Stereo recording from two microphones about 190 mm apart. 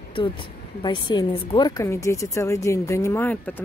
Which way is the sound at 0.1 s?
25° left (ahead or behind).